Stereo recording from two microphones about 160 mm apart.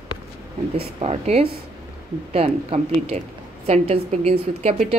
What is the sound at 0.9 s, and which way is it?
A woman's voice, 40° right (ahead or behind).